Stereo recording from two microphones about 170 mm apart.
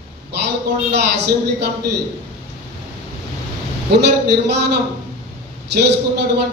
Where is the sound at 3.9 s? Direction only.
80° right.